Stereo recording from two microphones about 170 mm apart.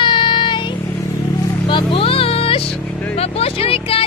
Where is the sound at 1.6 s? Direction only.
30° left (ahead or behind).